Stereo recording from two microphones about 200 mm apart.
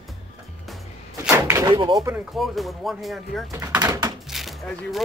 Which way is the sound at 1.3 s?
15° right (ahead or behind).